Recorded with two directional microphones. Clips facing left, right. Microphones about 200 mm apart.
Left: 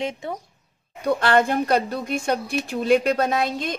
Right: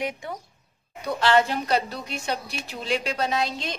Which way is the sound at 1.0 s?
50° left (ahead or behind).